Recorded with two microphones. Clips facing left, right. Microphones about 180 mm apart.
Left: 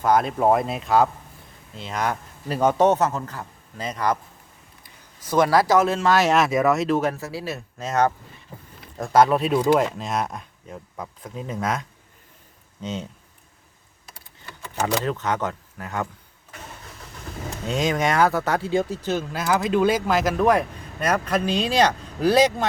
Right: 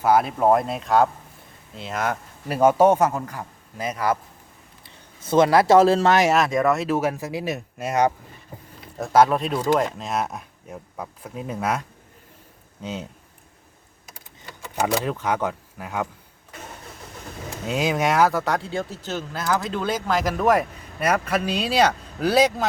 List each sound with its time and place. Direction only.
0.0 s speech: 5° right (ahead or behind)
5.2 s speech: 25° right (ahead or behind)
6.3 s speech: 5° left (ahead or behind); by 8.1 s 10° right (ahead or behind)
9.0 s speech: centre (ahead or behind)
12.8 s speech: 5° right (ahead or behind)
14.8 s speech: 10° right (ahead or behind)
17.7 s speech: 10° right (ahead or behind)
18.7 s speech: 15° left (ahead or behind); by 22.6 s 5° right (ahead or behind)